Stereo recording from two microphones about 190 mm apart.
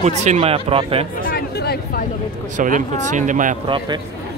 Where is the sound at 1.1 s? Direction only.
50° left (ahead or behind).